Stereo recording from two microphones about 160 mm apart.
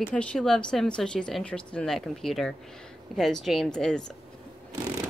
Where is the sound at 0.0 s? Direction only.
5° left (ahead or behind).